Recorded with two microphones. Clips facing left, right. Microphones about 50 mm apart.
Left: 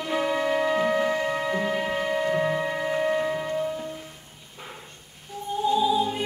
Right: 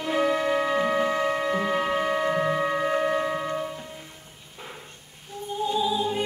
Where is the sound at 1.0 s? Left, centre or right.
Centre.